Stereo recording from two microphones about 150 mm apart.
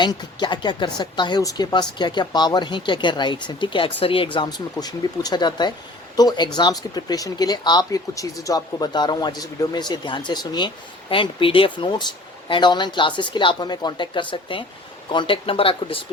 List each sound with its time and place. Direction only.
0.0 s a woman's voice: 30° left (ahead or behind)